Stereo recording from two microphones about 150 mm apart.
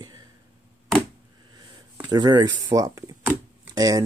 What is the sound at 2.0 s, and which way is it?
Speech, 30° right (ahead or behind).